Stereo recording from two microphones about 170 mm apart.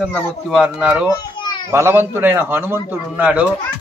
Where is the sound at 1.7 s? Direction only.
15° right (ahead or behind).